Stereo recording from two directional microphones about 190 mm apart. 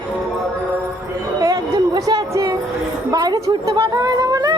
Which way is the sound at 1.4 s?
15° right (ahead or behind).